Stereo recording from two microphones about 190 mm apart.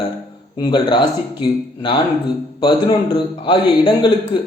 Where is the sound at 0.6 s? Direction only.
25° left (ahead or behind).